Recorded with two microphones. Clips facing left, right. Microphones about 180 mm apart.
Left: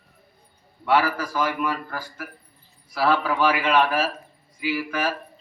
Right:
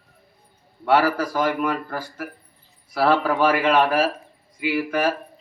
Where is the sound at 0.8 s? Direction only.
40° right (ahead or behind).